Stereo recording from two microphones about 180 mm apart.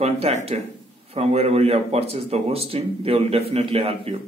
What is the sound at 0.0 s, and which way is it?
Speech, 35° right (ahead or behind).